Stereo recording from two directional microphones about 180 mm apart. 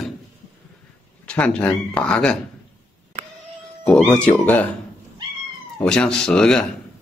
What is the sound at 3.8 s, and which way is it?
Speech, 5° left (ahead or behind).